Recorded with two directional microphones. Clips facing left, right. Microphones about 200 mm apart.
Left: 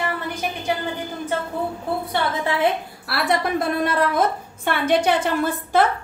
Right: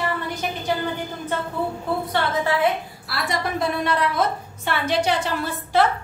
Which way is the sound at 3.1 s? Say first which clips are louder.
Left 4 dB; 60° left (ahead or behind).